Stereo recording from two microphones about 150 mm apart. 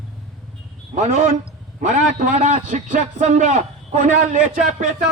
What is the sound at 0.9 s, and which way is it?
Speech, 50° right (ahead or behind).